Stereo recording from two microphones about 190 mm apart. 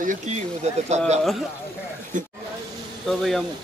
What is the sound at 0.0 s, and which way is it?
Speech, 45° right (ahead or behind).